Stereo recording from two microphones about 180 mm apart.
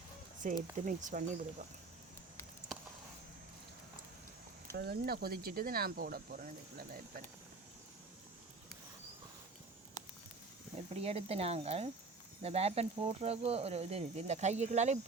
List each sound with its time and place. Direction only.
0.4 s speech: 45° right (ahead or behind)
4.8 s speech: 60° right (ahead or behind)
11.0 s speech: 35° right (ahead or behind)